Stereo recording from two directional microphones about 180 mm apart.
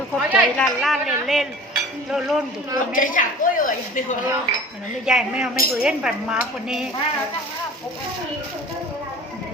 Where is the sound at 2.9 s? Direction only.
50° left (ahead or behind).